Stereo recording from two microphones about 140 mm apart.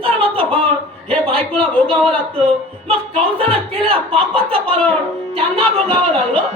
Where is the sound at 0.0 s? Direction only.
40° right (ahead or behind).